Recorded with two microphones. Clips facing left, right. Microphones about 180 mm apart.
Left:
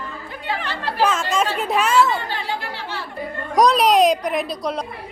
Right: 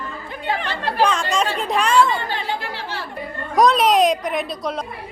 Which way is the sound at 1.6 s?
5° left (ahead or behind).